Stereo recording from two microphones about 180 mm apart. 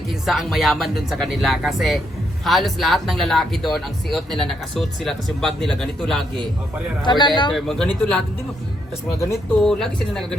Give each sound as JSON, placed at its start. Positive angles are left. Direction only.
{"t": 0.3, "sound": "speech", "side_deg": 0}
{"t": 7.0, "sound": "a man's voice", "side_deg": 25}
{"t": 7.5, "sound": "speech", "side_deg": 5}
{"t": 9.6, "sound": "speech", "side_deg": 5}